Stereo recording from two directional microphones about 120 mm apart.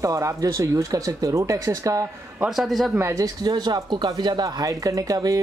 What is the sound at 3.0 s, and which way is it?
Speech, 25° right (ahead or behind).